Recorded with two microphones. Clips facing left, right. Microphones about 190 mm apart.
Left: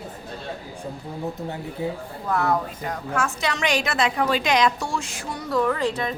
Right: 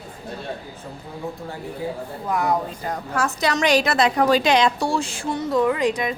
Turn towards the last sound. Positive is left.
turn(degrees=-15)  # may be behind; listen again after turning